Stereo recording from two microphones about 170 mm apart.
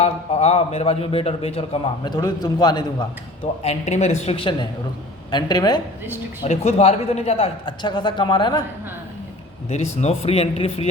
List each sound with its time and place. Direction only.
0.0 s a man's voice: 40° left (ahead or behind)
2.1 s a man's voice: 25° left (ahead or behind)
3.6 s a man's voice: 40° left (ahead or behind); by 5.8 s 25° left (ahead or behind)
6.4 s a man's voice: 40° left (ahead or behind)
9.6 s a man's voice: 40° left (ahead or behind)